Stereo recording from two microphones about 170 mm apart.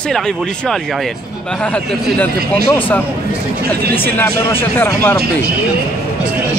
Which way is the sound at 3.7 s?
10° left (ahead or behind).